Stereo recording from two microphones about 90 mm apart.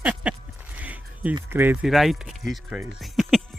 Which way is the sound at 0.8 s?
15° right (ahead or behind).